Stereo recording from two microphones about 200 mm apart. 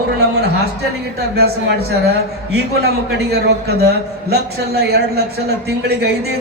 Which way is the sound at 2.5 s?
55° right (ahead or behind).